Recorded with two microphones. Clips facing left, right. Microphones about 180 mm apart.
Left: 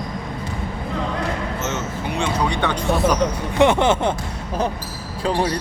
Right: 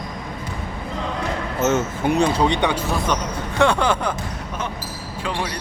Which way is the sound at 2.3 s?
20° right (ahead or behind).